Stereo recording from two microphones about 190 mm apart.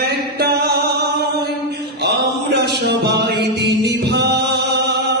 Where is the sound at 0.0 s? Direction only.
55° right (ahead or behind).